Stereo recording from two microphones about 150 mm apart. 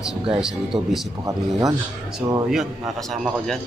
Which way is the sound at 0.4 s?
5° right (ahead or behind).